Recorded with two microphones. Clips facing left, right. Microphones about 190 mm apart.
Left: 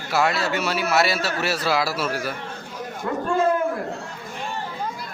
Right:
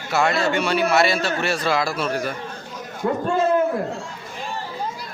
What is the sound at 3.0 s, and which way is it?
Speech, 25° right (ahead or behind).